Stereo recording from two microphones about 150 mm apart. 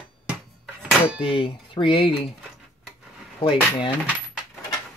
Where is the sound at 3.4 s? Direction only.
35° left (ahead or behind).